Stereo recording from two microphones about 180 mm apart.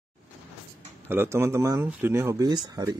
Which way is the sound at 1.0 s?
10° right (ahead or behind).